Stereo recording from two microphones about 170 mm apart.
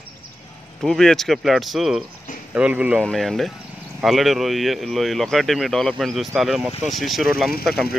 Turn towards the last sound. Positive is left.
turn(degrees=0)  # may be behind; listen again after turning